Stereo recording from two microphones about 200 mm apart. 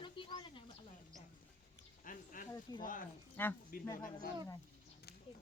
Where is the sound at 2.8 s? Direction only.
40° left (ahead or behind).